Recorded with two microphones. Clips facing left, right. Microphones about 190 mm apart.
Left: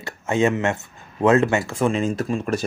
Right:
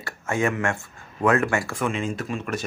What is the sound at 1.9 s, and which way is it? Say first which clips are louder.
Speech: left 5 dB; 40° left (ahead or behind).